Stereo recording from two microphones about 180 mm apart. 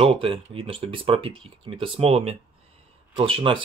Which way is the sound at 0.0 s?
30° right (ahead or behind).